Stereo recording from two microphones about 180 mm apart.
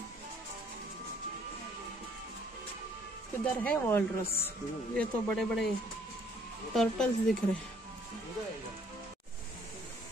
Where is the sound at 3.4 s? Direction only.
10° left (ahead or behind).